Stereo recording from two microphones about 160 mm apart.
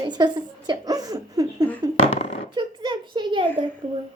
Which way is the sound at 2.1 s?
40° left (ahead or behind).